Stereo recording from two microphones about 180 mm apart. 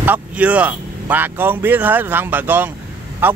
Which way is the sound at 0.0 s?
10° right (ahead or behind).